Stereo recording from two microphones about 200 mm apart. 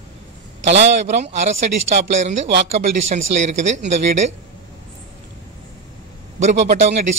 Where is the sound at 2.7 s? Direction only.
35° right (ahead or behind).